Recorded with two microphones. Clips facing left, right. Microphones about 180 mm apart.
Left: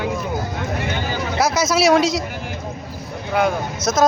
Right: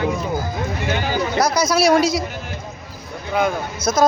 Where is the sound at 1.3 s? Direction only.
5° left (ahead or behind).